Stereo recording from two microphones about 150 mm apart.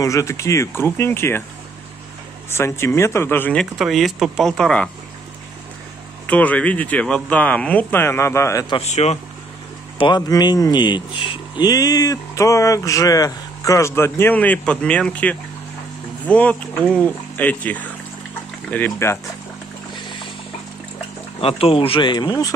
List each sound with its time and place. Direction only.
0.0 s speech: 20° left (ahead or behind)
2.5 s speech: 15° left (ahead or behind)
3.7 s speech: centre (ahead or behind)
6.2 s speech: 10° left (ahead or behind)
8.8 s speech: 45° left (ahead or behind)
9.9 s speech: 30° left (ahead or behind)
21.4 s speech: 40° left (ahead or behind)